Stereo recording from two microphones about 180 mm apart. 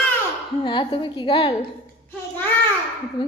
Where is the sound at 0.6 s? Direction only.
25° left (ahead or behind).